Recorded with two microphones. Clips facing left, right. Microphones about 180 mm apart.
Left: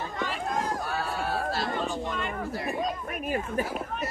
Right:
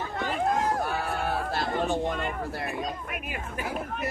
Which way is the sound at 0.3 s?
55° right (ahead or behind).